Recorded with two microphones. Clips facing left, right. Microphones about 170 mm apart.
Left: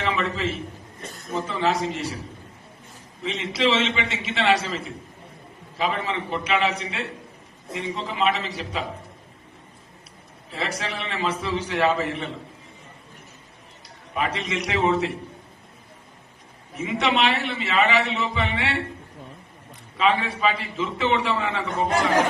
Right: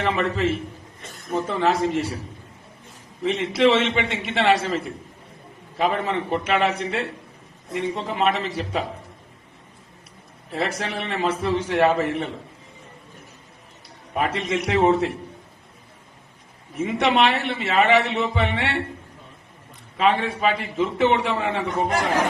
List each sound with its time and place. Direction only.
0.0 s a man's voice: 50° right (ahead or behind)
3.2 s a man's voice: 55° right (ahead or behind)
10.5 s a man's voice: 50° right (ahead or behind)
14.1 s a man's voice: 50° right (ahead or behind)
16.7 s a man's voice: 50° right (ahead or behind)
20.0 s a man's voice: 50° right (ahead or behind)